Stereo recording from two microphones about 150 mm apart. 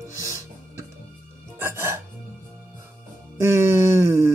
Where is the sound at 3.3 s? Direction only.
20° right (ahead or behind).